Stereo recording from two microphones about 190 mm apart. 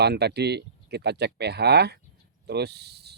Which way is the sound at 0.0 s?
60° right (ahead or behind).